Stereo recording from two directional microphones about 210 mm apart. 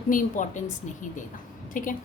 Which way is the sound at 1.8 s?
40° left (ahead or behind).